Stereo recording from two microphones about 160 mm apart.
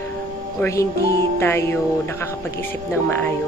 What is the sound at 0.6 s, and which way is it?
Speech, 20° left (ahead or behind).